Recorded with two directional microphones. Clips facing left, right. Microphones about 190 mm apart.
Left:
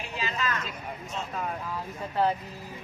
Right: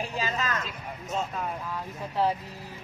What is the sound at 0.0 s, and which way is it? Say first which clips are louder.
Vehicle: right 2 dB; 40° right (ahead or behind).